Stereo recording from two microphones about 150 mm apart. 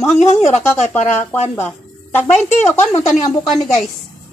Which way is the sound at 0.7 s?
15° left (ahead or behind).